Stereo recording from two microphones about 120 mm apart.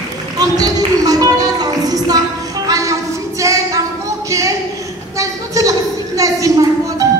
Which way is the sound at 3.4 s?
25° right (ahead or behind).